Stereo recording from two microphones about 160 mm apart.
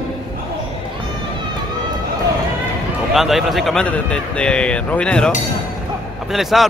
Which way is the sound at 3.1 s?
Centre (ahead or behind).